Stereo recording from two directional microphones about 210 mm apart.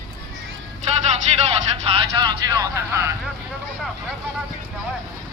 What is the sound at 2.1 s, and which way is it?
Speech, 20° right (ahead or behind).